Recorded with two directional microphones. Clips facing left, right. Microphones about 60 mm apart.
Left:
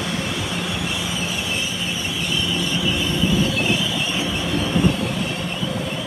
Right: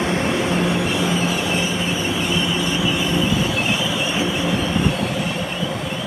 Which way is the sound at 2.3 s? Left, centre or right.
Right.